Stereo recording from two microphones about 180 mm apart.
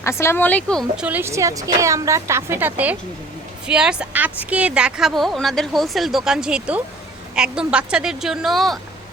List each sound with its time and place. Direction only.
0.0 s speech: 15° left (ahead or behind)
1.0 s a woman's voice: 10° right (ahead or behind)